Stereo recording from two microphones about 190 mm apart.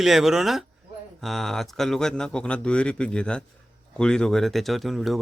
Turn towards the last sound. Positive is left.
turn(degrees=0)  # may be behind; listen again after turning